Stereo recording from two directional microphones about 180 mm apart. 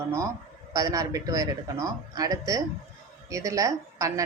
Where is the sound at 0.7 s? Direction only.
20° right (ahead or behind).